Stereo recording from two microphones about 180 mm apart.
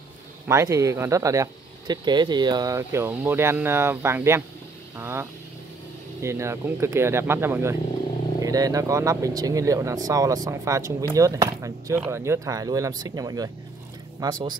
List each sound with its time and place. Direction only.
0.5 s speech: 15° right (ahead or behind)